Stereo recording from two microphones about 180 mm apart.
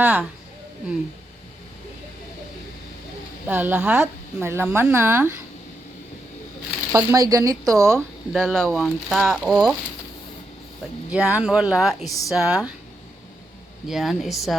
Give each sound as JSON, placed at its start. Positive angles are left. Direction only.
{"t": 0.0, "sound": "speech", "side_deg": -10}
{"t": 3.4, "sound": "speech", "side_deg": -10}
{"t": 6.9, "sound": "speech", "side_deg": -20}
{"t": 8.3, "sound": "speech", "side_deg": 0}
{"t": 11.1, "sound": "speech", "side_deg": -5}
{"t": 13.8, "sound": "speech", "side_deg": 0}